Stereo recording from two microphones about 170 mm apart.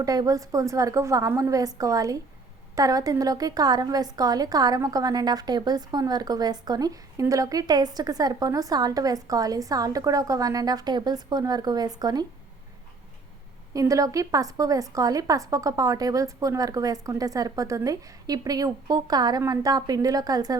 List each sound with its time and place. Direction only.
0.0 s a woman's voice: 20° right (ahead or behind)
13.7 s a woman's voice: 20° right (ahead or behind)